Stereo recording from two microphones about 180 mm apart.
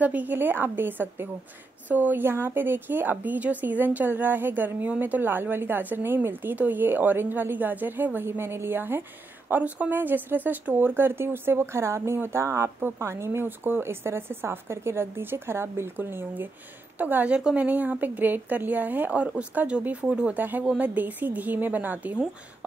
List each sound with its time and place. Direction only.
0.0 s a woman's voice: 10° right (ahead or behind)